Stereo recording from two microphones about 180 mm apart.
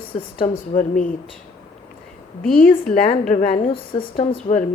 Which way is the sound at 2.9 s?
50° left (ahead or behind).